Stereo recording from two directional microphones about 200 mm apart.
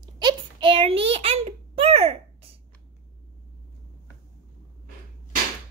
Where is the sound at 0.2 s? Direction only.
25° right (ahead or behind).